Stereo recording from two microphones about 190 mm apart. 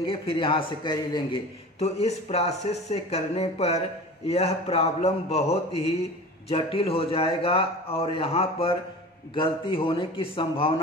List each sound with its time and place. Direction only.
0.0 s a man's voice: 30° left (ahead or behind)
1.8 s a man's voice: 35° left (ahead or behind)